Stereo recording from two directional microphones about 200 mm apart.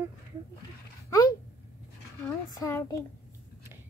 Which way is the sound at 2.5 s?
20° left (ahead or behind).